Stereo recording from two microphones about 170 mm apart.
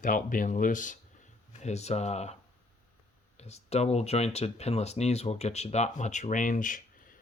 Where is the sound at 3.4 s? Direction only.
40° left (ahead or behind).